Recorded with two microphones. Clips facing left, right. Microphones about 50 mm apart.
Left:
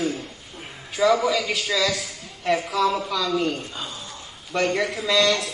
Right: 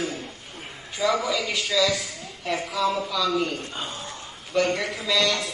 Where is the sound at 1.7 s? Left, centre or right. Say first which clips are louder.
Right 1 dB; centre.